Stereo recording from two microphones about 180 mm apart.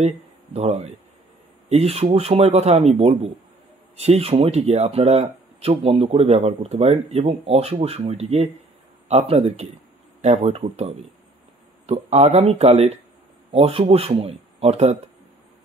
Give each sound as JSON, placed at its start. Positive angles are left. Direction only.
{"t": 0.0, "sound": "speech", "side_deg": -35}